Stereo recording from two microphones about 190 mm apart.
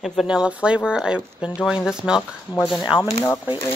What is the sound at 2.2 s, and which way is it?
Speech, 15° left (ahead or behind).